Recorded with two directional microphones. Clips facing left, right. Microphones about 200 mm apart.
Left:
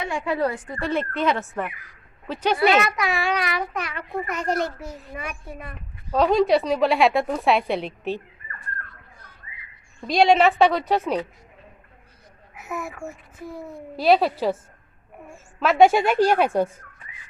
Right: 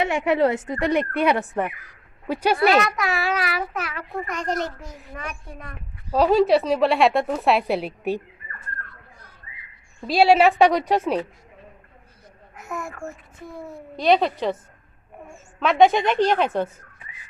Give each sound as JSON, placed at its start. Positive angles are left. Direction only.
{"t": 0.0, "sound": "a woman's voice", "side_deg": -75}
{"t": 0.3, "sound": "a woman's voice", "side_deg": -25}
{"t": 2.6, "sound": "a child's voice", "side_deg": 0}
{"t": 6.1, "sound": "a child's voice", "side_deg": -5}
{"t": 10.0, "sound": "a woman's voice", "side_deg": -5}
{"t": 12.5, "sound": "a child's voice", "side_deg": 5}